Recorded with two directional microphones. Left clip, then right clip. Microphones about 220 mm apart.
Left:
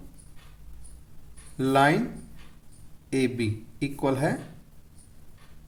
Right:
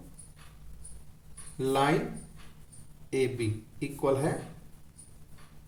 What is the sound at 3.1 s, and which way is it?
A man's voice, 45° left (ahead or behind).